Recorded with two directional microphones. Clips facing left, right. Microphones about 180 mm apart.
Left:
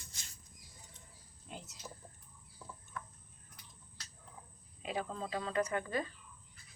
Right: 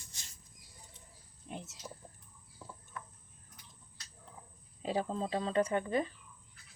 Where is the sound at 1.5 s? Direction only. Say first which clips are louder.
Right 5 dB; 25° right (ahead or behind).